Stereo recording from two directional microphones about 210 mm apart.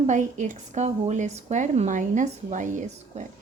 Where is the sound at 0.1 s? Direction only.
35° right (ahead or behind).